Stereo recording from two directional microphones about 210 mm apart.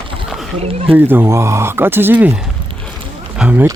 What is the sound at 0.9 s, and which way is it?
Speech, 10° right (ahead or behind).